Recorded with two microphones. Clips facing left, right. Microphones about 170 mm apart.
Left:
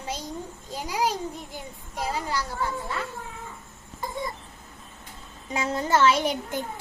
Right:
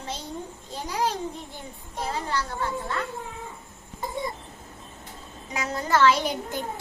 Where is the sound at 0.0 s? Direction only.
10° left (ahead or behind).